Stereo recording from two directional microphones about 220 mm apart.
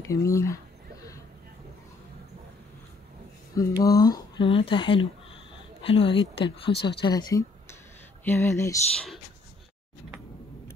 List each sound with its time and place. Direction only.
0.1 s speech: 15° left (ahead or behind)
3.5 s speech: 15° left (ahead or behind)